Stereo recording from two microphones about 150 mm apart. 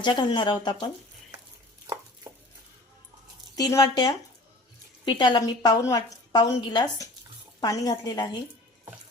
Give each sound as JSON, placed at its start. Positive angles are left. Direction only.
{"t": 0.0, "sound": "a woman's voice", "side_deg": 30}
{"t": 2.3, "sound": "a sound", "side_deg": -20}
{"t": 3.5, "sound": "a woman's voice", "side_deg": 25}